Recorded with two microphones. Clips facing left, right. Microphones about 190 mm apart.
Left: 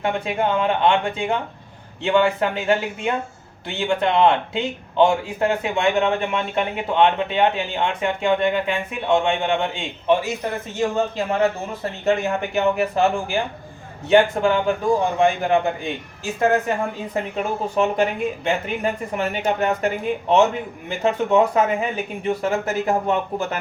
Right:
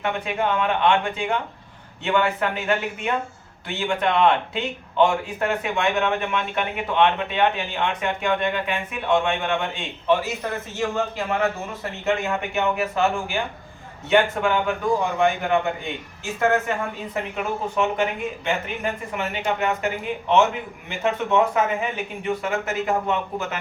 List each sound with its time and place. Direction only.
0.0 s speech: 30° left (ahead or behind)
17.2 s speech: 35° left (ahead or behind)